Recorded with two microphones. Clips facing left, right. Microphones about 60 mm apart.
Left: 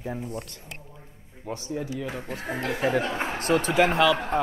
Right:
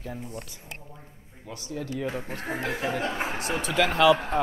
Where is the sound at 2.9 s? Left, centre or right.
Left.